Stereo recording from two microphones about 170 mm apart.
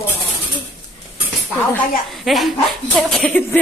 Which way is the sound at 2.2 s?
Centre (ahead or behind).